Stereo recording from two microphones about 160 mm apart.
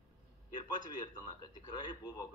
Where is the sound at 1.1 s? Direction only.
25° left (ahead or behind).